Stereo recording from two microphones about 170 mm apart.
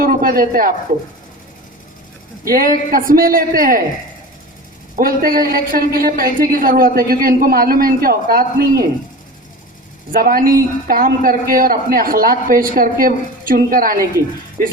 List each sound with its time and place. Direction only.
0.0 s a sound: 55° right (ahead or behind)
2.4 s a man's voice: 60° right (ahead or behind)
4.9 s a man's voice: 55° right (ahead or behind)
10.1 s a man's voice: 60° right (ahead or behind)